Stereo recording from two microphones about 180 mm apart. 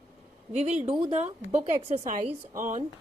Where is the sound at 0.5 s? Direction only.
35° right (ahead or behind).